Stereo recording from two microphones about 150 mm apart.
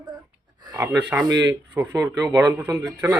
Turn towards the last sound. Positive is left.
turn(degrees=-20)  # may be behind; listen again after turning